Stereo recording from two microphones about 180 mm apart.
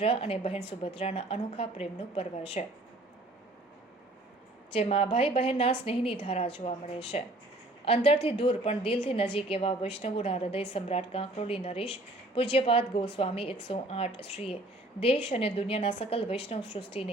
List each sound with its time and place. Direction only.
0.0 s a woman's voice: 30° left (ahead or behind)
4.7 s a woman's voice: 35° left (ahead or behind)